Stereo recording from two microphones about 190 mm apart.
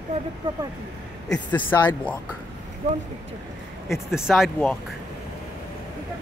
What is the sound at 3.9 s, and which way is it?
Speech, centre (ahead or behind).